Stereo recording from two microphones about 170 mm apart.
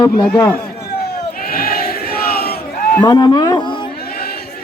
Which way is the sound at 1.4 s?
60° left (ahead or behind).